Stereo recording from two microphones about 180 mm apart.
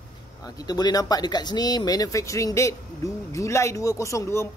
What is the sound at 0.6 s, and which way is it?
Speech, 20° left (ahead or behind).